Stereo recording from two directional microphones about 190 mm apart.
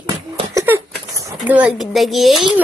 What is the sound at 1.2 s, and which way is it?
Speech, 15° right (ahead or behind).